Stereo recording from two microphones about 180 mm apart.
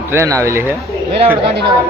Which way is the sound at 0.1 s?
15° right (ahead or behind).